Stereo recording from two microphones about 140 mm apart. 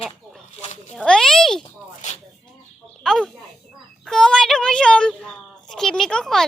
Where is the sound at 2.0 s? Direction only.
50° left (ahead or behind).